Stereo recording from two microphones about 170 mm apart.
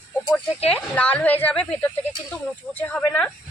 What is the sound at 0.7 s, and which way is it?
Speech, 10° left (ahead or behind).